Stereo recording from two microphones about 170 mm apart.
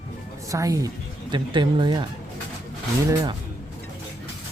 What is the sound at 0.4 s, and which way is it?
Speech, 20° right (ahead or behind).